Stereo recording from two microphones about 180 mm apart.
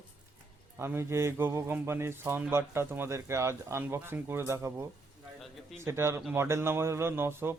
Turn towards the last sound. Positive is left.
turn(degrees=-15)  # may be behind; listen again after turning